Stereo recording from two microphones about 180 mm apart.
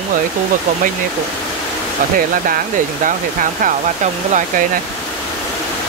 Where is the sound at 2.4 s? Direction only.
50° right (ahead or behind).